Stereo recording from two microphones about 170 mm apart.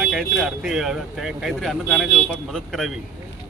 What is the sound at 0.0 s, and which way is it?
Speech, centre (ahead or behind).